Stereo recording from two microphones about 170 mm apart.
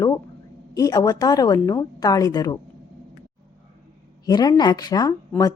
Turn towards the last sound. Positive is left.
turn(degrees=20)  # may be behind; listen again after turning